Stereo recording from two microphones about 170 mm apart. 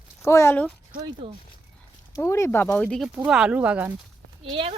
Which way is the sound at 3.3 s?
5° right (ahead or behind).